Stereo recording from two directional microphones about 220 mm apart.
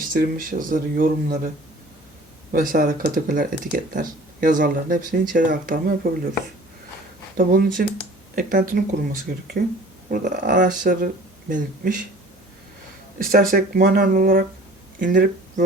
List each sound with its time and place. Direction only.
0.1 s speech: 40° right (ahead or behind)
2.5 s speech: 40° right (ahead or behind)
7.3 s speech: 40° right (ahead or behind)
13.1 s speech: 40° right (ahead or behind)